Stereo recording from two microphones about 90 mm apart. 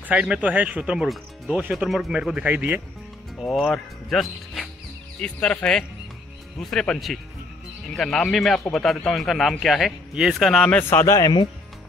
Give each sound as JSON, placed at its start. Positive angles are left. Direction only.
{"t": 0.0, "sound": "speech", "side_deg": -15}
{"t": 1.0, "sound": "speech", "side_deg": 0}
{"t": 2.4, "sound": "speech", "side_deg": -20}
{"t": 3.3, "sound": "speech", "side_deg": 0}
{"t": 5.2, "sound": "speech", "side_deg": 10}
{"t": 10.1, "sound": "speech", "side_deg": -10}
{"t": 10.5, "sound": "speech", "side_deg": 5}
{"t": 10.8, "sound": "a man's voice", "side_deg": 25}